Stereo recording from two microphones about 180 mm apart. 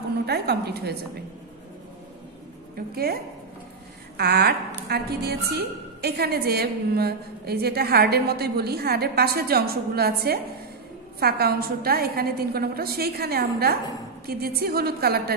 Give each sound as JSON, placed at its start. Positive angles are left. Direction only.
{"t": 0.3, "sound": "a woman's voice", "side_deg": -65}
{"t": 2.9, "sound": "a woman's voice", "side_deg": -60}
{"t": 4.2, "sound": "a woman's voice", "side_deg": -60}